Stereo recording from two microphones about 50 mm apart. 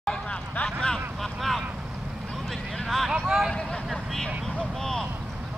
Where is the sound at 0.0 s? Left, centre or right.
Centre.